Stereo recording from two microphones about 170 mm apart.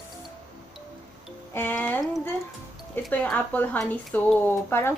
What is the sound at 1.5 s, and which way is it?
Speech, 10° left (ahead or behind).